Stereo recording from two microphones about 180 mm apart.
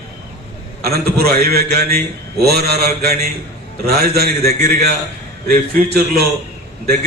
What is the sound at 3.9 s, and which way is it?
Speech, 60° right (ahead or behind).